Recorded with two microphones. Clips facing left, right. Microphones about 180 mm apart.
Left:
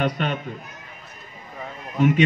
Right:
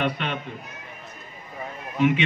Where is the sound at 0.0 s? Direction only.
40° left (ahead or behind).